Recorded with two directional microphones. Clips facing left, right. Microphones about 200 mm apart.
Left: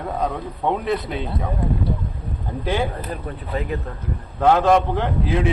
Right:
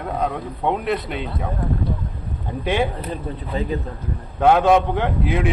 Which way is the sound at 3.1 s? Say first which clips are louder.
Right 1 dB; 25° right (ahead or behind).